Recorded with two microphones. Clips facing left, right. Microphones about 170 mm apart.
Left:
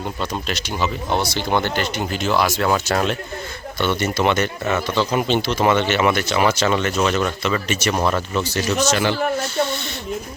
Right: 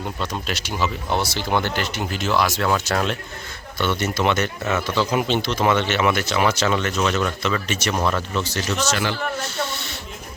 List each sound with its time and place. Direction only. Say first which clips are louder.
0.2 s speech: left 2 dB; 5° right (ahead or behind)
8.9 s speech: left 4 dB; 20° left (ahead or behind)